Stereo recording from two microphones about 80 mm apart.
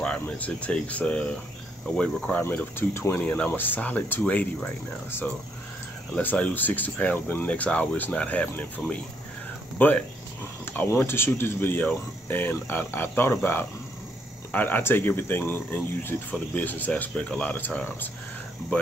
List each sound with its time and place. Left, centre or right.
0.0 s speech: centre
2.4 s speech: left
3.1 s speech: left
6.1 s speech: centre
10.6 s a sound: left
11.0 s speech: left